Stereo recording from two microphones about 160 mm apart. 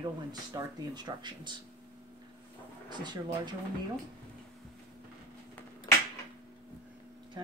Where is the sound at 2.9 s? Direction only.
25° right (ahead or behind).